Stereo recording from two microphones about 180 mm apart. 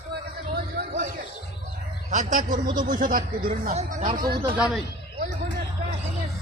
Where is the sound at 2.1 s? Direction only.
45° right (ahead or behind).